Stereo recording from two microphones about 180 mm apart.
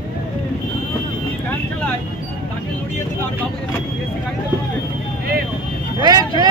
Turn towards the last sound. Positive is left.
turn(degrees=-20)  # may be behind; listen again after turning